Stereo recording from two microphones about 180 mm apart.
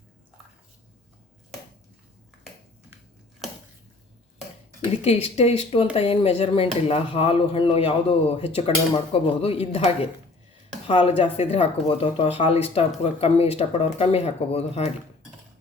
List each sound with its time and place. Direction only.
5.0 s speech: 35° left (ahead or behind)